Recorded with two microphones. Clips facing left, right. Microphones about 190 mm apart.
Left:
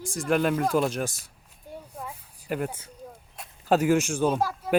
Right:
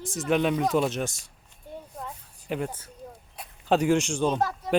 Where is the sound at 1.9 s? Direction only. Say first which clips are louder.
Even; 5° left (ahead or behind).